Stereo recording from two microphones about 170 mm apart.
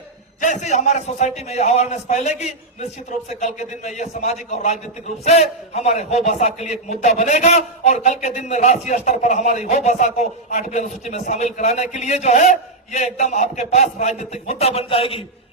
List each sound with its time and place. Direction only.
0.4 s speech: 45° left (ahead or behind)